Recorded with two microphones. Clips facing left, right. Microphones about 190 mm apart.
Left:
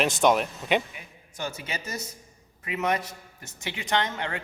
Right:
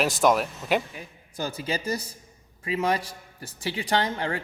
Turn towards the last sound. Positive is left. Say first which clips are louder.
# right 2 dB
turn(degrees=-35)  # may be behind; listen again after turning